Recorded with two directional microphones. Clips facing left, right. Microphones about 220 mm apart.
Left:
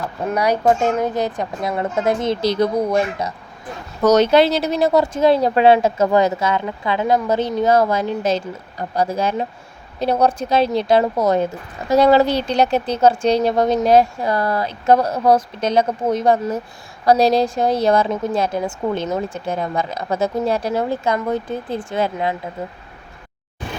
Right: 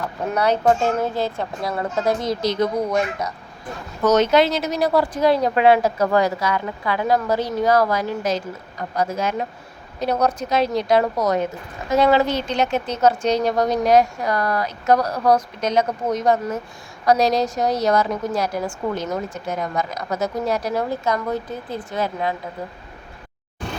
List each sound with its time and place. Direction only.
0.3 s speech: 10° left (ahead or behind); by 22.4 s 25° left (ahead or behind)